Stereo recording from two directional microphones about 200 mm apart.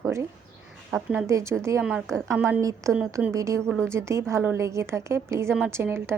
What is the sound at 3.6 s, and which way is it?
Speech, 5° left (ahead or behind).